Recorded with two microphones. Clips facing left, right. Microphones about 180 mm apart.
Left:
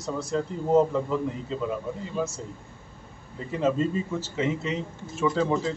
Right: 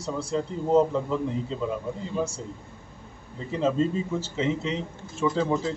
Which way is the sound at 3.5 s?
10° left (ahead or behind).